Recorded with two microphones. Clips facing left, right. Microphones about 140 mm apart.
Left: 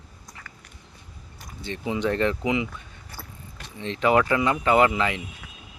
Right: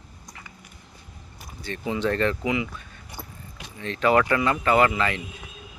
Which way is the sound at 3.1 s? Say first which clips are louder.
Right 2 dB; 10° right (ahead or behind).